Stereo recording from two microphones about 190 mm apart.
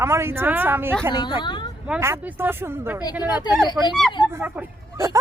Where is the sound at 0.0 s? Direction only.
15° right (ahead or behind).